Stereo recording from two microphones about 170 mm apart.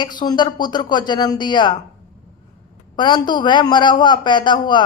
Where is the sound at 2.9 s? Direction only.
25° left (ahead or behind).